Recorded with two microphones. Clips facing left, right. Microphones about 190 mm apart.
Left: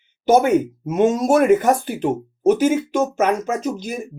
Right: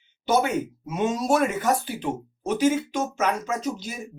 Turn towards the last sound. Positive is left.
turn(degrees=50)  # may be behind; listen again after turning